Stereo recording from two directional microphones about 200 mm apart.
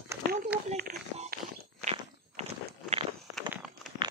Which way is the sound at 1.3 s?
35° right (ahead or behind).